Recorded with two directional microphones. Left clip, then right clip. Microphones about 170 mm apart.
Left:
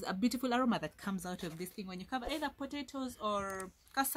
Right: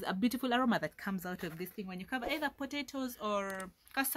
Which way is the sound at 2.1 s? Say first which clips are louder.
Right 2 dB; 25° right (ahead or behind).